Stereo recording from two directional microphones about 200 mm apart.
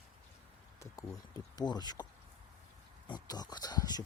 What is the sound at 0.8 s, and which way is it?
Speech, 15° left (ahead or behind).